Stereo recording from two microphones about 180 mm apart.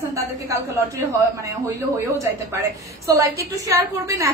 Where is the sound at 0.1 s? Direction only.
15° right (ahead or behind).